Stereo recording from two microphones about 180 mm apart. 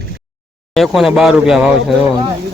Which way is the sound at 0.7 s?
Centre (ahead or behind).